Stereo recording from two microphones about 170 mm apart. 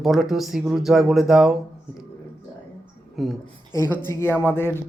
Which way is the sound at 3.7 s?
15° left (ahead or behind).